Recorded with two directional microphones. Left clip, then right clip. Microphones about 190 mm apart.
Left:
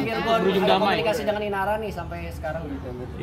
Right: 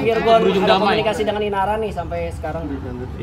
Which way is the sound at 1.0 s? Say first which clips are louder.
Right 4 dB; 30° left (ahead or behind).